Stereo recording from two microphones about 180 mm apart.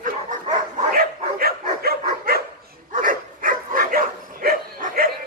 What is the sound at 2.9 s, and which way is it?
Dog, 50° right (ahead or behind).